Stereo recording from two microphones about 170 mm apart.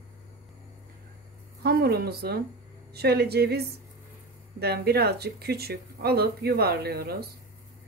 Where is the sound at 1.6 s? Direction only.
65° right (ahead or behind).